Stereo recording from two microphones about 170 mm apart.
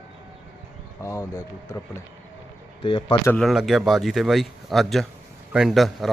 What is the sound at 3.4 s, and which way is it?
Speech, centre (ahead or behind).